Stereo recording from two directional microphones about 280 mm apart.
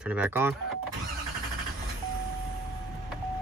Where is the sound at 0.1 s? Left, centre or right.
Centre.